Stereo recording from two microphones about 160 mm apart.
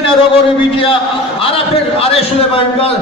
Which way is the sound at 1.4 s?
35° left (ahead or behind).